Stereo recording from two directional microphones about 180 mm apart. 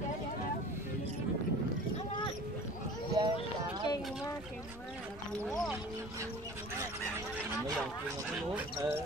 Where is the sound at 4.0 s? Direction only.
Centre (ahead or behind).